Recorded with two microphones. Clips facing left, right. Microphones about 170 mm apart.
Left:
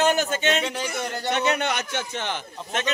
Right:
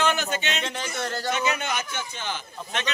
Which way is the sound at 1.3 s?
65° left (ahead or behind).